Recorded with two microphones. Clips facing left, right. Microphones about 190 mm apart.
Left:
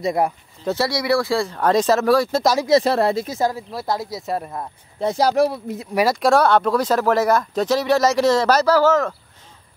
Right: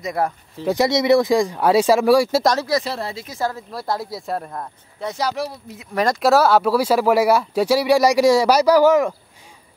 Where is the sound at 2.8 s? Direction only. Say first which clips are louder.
Left 9 dB; 55° left (ahead or behind).